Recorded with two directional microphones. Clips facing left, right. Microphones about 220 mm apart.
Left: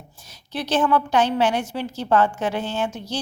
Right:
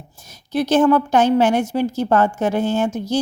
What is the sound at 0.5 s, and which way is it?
A woman's voice, 45° right (ahead or behind).